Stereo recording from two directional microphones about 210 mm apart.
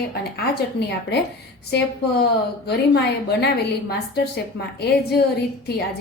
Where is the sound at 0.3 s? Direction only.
50° left (ahead or behind).